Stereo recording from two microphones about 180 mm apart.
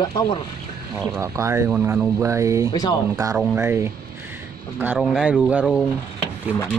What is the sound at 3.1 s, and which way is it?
Speech, 15° right (ahead or behind).